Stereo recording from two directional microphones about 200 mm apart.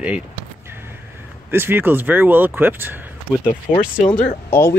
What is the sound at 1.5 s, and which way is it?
Speech, 10° right (ahead or behind).